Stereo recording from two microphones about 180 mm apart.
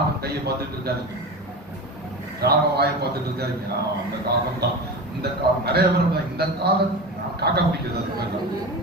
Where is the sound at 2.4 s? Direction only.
65° right (ahead or behind).